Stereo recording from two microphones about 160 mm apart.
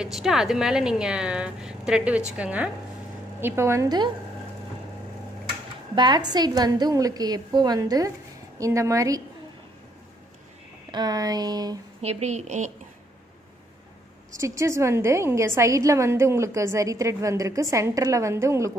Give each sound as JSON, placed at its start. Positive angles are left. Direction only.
{"t": 0.0, "sound": "a woman's voice", "side_deg": 0}
{"t": 5.9, "sound": "a woman's voice", "side_deg": -25}
{"t": 10.9, "sound": "a woman's voice", "side_deg": -25}
{"t": 12.0, "sound": "a woman's voice", "side_deg": -40}
{"t": 14.3, "sound": "a woman's voice", "side_deg": -20}